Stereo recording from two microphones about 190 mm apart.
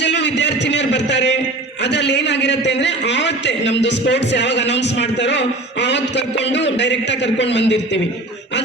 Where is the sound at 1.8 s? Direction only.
65° left (ahead or behind).